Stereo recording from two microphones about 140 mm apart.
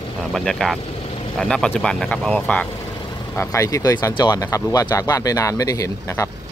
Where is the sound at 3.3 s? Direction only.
20° left (ahead or behind).